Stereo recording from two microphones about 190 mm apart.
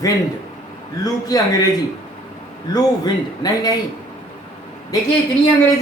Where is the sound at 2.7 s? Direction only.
20° left (ahead or behind).